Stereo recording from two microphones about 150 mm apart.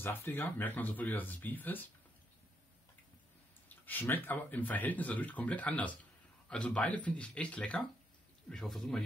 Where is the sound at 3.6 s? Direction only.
10° left (ahead or behind).